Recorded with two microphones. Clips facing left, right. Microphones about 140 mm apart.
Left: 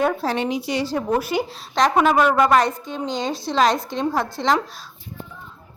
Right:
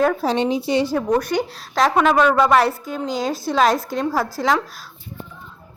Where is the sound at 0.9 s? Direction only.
5° left (ahead or behind).